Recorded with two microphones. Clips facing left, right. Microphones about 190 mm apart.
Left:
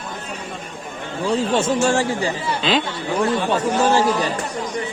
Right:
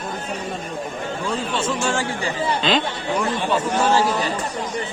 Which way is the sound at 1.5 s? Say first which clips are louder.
Left 5 dB; 40° left (ahead or behind).